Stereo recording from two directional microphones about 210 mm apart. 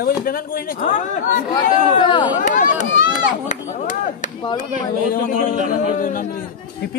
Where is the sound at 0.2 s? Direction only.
45° left (ahead or behind).